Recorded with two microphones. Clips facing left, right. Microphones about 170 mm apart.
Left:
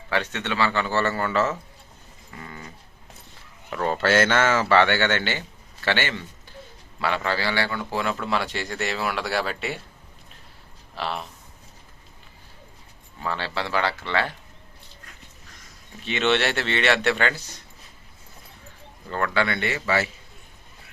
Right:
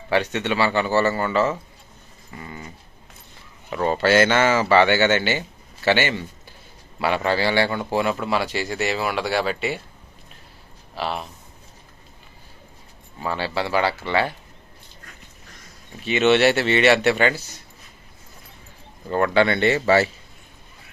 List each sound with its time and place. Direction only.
0.1 s speech: 15° right (ahead or behind)
2.4 s a sound: 10° right (ahead or behind)
3.7 s a man's voice: 5° right (ahead or behind)
10.9 s a man's voice: 5° right (ahead or behind)
13.2 s speech: 10° right (ahead or behind)
16.0 s speech: 10° right (ahead or behind)
19.0 s speech: 20° right (ahead or behind)